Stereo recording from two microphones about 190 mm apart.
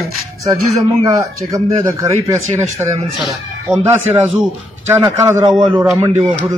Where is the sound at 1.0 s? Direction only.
20° right (ahead or behind).